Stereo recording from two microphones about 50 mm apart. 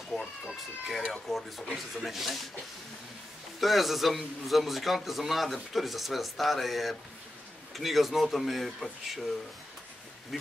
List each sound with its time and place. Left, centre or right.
0.2 s cat: centre
2.0 s a man's voice: centre
3.6 s a man's voice: centre
10.3 s a man's voice: centre